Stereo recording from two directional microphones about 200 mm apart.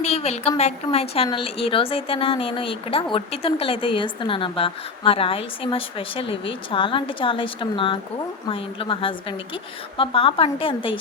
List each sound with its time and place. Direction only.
0.0 s a woman's voice: 30° left (ahead or behind)